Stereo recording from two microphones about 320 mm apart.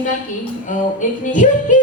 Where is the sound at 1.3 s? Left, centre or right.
Left.